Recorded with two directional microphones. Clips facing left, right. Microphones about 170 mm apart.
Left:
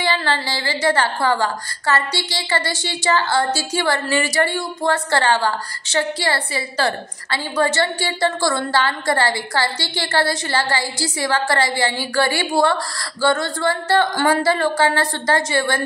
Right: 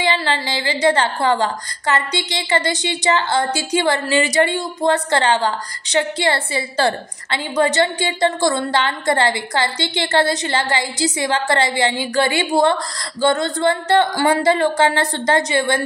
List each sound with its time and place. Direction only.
0.0 s a woman's voice: 20° right (ahead or behind)